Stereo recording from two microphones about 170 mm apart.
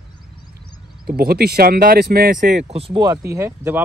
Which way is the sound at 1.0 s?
65° right (ahead or behind).